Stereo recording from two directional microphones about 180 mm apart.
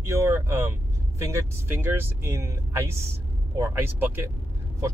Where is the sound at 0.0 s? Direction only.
15° right (ahead or behind).